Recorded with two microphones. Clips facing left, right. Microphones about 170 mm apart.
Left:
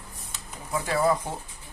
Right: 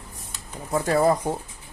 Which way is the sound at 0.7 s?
45° right (ahead or behind).